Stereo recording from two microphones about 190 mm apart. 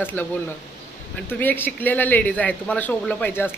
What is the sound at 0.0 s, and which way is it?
Speech, 10° left (ahead or behind).